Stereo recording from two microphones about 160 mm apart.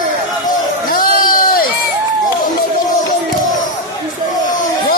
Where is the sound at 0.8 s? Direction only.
60° left (ahead or behind).